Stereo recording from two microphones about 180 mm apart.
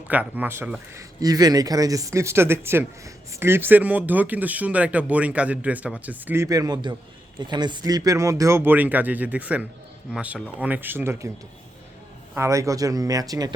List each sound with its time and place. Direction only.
0.1 s speech: 10° right (ahead or behind)
1.2 s speech: 20° right (ahead or behind)
12.3 s speech: 15° right (ahead or behind)